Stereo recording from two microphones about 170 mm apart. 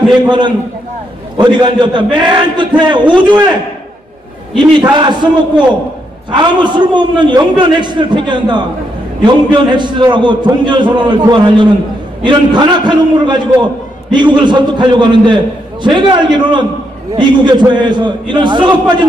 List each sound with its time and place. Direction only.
0.3 s a man's voice: 25° right (ahead or behind)
4.9 s a man's voice: 25° right (ahead or behind)
6.3 s a man's voice: 25° right (ahead or behind)